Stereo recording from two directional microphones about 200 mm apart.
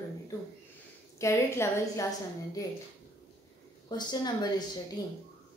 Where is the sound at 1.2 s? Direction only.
15° left (ahead or behind).